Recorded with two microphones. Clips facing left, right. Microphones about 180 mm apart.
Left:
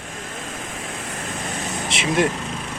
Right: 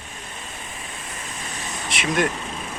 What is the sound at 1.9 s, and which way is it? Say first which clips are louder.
Speech: left 2 dB; 25° left (ahead or behind).